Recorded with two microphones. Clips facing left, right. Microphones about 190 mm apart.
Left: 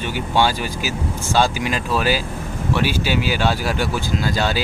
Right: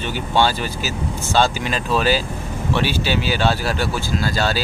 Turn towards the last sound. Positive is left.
turn(degrees=15)  # may be behind; listen again after turning